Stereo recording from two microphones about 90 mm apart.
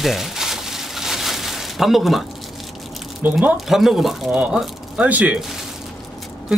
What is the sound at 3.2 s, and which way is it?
Speech, 15° right (ahead or behind).